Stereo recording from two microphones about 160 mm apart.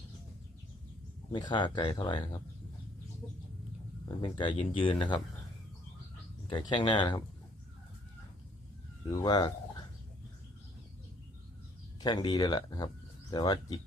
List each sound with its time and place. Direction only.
1.3 s speech: 30° left (ahead or behind)
4.2 s speech: 30° left (ahead or behind)
6.5 s speech: 30° left (ahead or behind)
9.0 s speech: 25° left (ahead or behind)
11.9 s speech: 25° left (ahead or behind)